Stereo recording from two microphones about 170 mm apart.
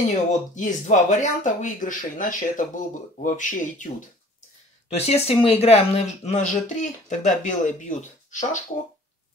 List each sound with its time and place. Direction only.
0.6 s speech: 45° left (ahead or behind)